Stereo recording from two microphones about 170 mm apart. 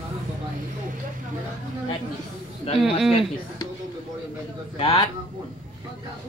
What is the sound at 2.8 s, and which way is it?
Speech, 5° right (ahead or behind).